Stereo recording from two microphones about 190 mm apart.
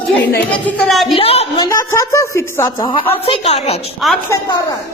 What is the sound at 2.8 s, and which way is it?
A woman's voice, 25° left (ahead or behind).